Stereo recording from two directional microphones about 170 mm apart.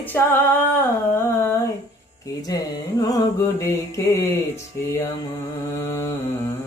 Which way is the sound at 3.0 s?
20° left (ahead or behind).